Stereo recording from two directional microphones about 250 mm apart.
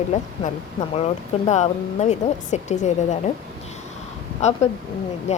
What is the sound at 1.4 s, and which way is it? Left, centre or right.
A woman's voice, left.